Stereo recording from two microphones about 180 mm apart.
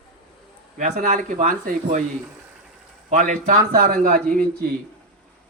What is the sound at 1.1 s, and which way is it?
Speech, 45° right (ahead or behind).